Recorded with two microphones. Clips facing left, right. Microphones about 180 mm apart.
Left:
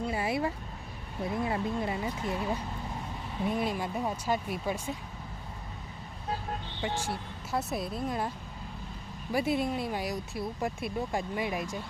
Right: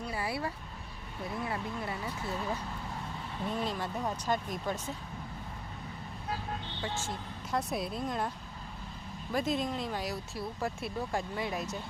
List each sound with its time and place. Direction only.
0.0 s a sound: 20° left (ahead or behind)
1.3 s speech: 20° left (ahead or behind)
6.8 s speech: 10° left (ahead or behind)
9.3 s speech: 10° left (ahead or behind)